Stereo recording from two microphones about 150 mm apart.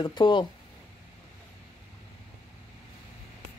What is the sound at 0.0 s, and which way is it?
Speech, 30° left (ahead or behind).